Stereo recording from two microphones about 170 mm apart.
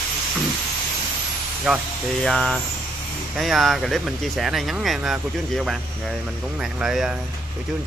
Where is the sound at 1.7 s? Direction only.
5° right (ahead or behind).